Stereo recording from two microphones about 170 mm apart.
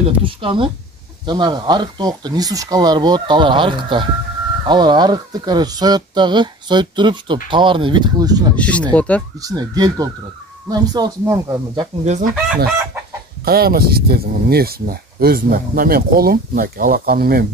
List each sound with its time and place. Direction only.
0.0 s speech: 30° right (ahead or behind)
8.5 s speech: 5° left (ahead or behind)
9.4 s speech: 20° right (ahead or behind)
12.0 s speech: 45° right (ahead or behind)
13.5 s speech: 65° right (ahead or behind)